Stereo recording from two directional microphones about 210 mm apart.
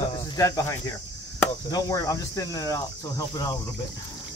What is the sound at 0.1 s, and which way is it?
Speech, 15° left (ahead or behind).